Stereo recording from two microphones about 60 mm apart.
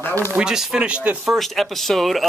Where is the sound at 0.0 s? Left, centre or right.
Left.